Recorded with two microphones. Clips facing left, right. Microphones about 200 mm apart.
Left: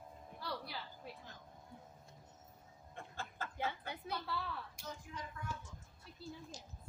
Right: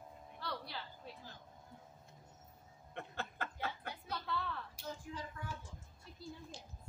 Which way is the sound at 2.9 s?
65° right (ahead or behind).